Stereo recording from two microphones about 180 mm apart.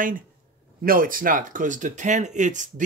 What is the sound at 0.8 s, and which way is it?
Speech, 50° right (ahead or behind).